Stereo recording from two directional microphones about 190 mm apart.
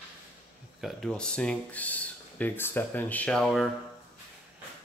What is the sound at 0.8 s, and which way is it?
Speech, centre (ahead or behind).